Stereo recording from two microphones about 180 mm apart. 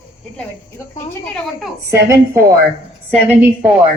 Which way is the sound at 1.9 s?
15° right (ahead or behind).